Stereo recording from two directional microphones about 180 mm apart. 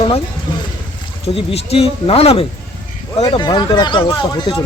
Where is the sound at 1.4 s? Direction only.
30° left (ahead or behind).